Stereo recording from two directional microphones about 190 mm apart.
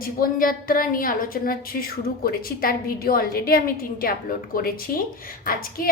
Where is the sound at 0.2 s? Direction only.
50° left (ahead or behind).